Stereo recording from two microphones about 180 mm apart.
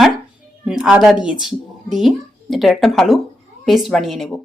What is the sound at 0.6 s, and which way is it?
A woman's voice, 5° right (ahead or behind).